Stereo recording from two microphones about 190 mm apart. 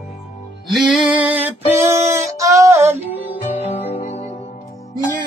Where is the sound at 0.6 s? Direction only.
Centre (ahead or behind).